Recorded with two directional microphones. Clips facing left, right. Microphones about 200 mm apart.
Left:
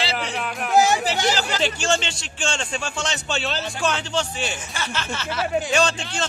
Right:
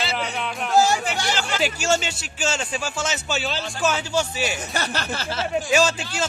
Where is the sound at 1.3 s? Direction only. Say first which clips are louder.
Left 1 dB; 40° left (ahead or behind).